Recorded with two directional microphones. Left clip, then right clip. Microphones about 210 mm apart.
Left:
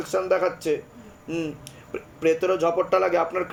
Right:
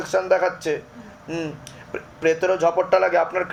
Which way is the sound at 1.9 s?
25° left (ahead or behind).